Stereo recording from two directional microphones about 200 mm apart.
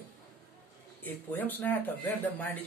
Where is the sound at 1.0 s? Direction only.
10° left (ahead or behind).